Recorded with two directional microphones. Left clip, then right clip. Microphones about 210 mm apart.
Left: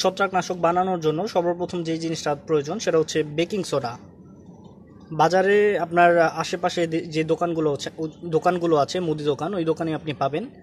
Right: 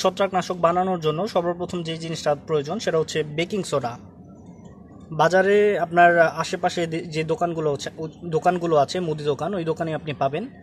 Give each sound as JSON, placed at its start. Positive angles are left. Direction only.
{"t": 0.0, "sound": "a man's voice", "side_deg": 0}
{"t": 5.1, "sound": "a man's voice", "side_deg": 0}